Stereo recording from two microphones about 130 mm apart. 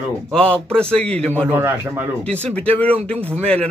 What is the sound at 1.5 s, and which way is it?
Speech, 15° right (ahead or behind).